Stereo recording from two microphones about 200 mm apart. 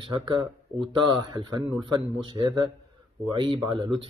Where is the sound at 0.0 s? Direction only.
25° right (ahead or behind).